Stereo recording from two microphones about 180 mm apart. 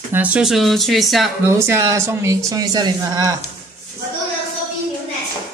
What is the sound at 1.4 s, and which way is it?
A woman's voice, 15° right (ahead or behind).